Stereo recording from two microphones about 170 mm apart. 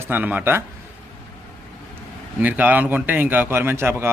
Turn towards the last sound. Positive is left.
turn(degrees=-15)  # may be behind; listen again after turning